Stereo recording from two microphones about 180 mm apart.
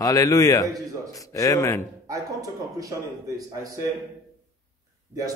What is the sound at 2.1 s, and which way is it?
A man's voice, 20° right (ahead or behind).